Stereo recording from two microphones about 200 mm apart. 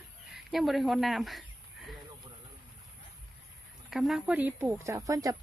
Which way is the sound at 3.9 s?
5° right (ahead or behind).